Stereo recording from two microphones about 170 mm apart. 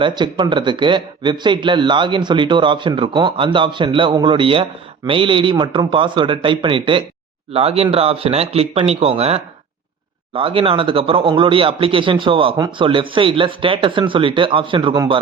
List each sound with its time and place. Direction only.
0.0 s speech: 25° right (ahead or behind)